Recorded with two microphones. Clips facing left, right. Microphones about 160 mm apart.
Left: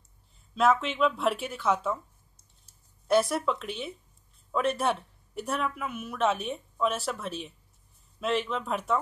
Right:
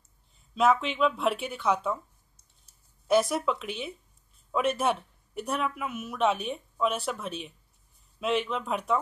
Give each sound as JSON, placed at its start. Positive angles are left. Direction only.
{"t": 0.6, "sound": "speech", "side_deg": 0}